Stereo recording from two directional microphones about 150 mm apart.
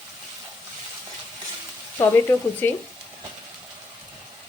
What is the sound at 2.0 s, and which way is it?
Speech, 15° left (ahead or behind).